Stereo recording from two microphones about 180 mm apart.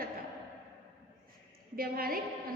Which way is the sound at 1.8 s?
55° right (ahead or behind).